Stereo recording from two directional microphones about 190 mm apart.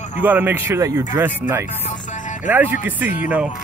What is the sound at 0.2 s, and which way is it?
Speech, 10° right (ahead or behind).